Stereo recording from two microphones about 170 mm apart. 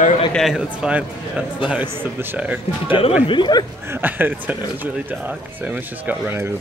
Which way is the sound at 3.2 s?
30° left (ahead or behind).